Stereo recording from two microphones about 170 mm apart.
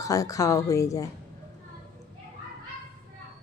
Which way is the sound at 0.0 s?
20° left (ahead or behind).